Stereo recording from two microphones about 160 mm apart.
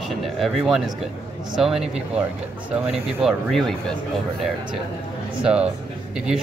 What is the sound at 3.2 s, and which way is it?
Speech, centre (ahead or behind).